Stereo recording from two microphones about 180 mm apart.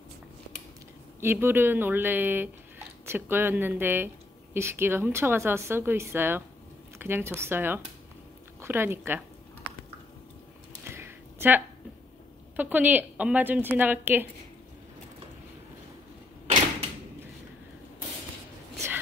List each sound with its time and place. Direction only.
1.2 s a woman's voice: 10° right (ahead or behind)
10.8 s a sound: 15° right (ahead or behind)
12.5 s a woman's voice: 10° right (ahead or behind)